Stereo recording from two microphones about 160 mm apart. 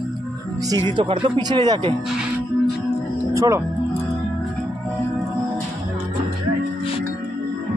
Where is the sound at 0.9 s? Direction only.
30° right (ahead or behind).